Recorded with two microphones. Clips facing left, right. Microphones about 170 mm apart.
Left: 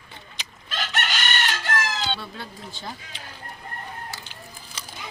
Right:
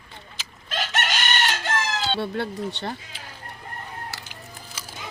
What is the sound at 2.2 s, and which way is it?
Speech, 70° right (ahead or behind).